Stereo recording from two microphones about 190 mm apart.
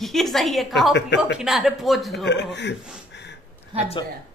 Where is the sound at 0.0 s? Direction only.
Centre (ahead or behind).